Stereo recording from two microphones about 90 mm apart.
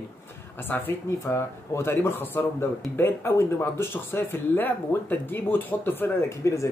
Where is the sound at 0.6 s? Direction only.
25° left (ahead or behind).